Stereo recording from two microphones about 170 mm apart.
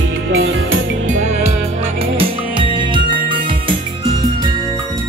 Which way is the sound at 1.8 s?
35° right (ahead or behind).